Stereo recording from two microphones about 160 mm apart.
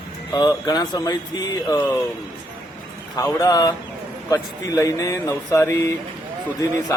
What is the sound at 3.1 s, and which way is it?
A man's voice, 20° left (ahead or behind).